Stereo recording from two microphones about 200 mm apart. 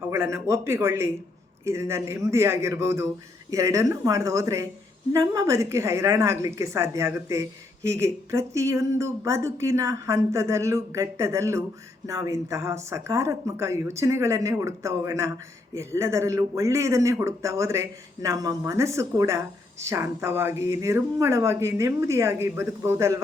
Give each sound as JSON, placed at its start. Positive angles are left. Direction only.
{"t": 0.1, "sound": "speech", "side_deg": -15}